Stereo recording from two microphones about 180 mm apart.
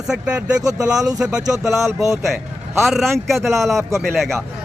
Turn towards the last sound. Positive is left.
turn(degrees=0)  # may be behind; listen again after turning